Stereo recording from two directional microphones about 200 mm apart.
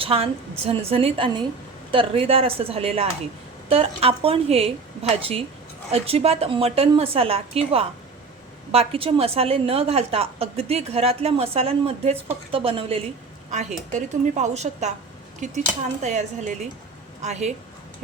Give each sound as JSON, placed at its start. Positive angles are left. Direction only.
{"t": 0.0, "sound": "a woman's voice", "side_deg": -30}